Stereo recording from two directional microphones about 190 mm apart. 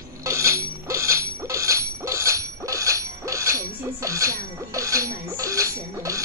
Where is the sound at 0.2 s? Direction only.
15° right (ahead or behind).